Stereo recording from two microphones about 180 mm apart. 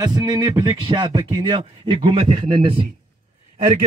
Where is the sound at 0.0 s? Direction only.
20° right (ahead or behind).